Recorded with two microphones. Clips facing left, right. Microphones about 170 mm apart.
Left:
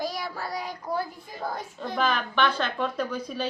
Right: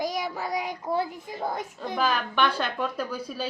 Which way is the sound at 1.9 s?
5° right (ahead or behind).